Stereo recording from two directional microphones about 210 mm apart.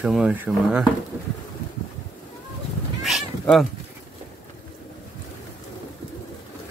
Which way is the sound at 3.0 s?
Centre (ahead or behind).